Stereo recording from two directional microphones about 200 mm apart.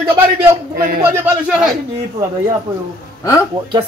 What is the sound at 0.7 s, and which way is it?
Speech, 50° right (ahead or behind).